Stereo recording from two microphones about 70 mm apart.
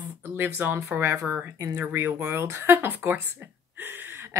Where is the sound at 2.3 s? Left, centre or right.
Right.